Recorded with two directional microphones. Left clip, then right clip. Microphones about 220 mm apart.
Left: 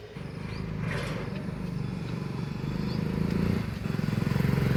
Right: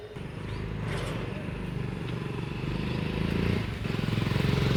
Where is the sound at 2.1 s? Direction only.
40° left (ahead or behind).